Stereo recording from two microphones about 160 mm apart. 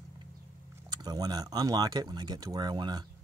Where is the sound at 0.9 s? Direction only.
25° right (ahead or behind).